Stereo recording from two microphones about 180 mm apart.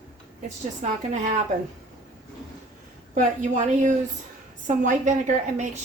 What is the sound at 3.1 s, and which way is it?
A woman's voice, 45° right (ahead or behind).